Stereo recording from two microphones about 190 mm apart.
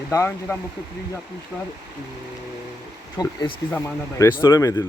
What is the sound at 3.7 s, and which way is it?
Speech, 10° left (ahead or behind).